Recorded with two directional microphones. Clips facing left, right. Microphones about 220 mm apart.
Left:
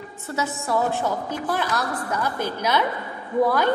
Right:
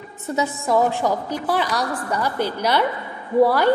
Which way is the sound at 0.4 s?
15° right (ahead or behind).